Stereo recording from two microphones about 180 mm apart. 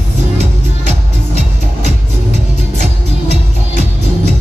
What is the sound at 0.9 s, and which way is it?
Music, 40° right (ahead or behind).